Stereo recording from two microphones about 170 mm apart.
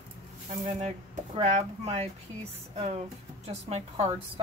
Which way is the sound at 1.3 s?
35° right (ahead or behind).